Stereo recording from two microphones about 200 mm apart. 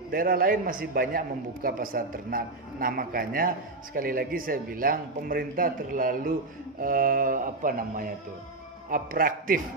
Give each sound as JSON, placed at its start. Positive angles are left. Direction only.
{"t": 0.1, "sound": "a man's voice", "side_deg": -45}